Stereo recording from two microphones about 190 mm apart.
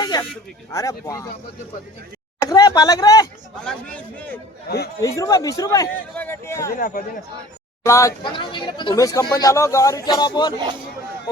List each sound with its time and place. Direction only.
0.0 s a sound: 20° left (ahead or behind)
0.7 s a man's voice: 20° left (ahead or behind)
2.5 s speech: 20° left (ahead or behind)
3.6 s a man's voice: 5° left (ahead or behind)
4.9 s a man's voice: 15° left (ahead or behind)
6.7 s speech: 45° left (ahead or behind)
7.9 s a man's voice: 15° left (ahead or behind)
8.2 s speech: 25° left (ahead or behind)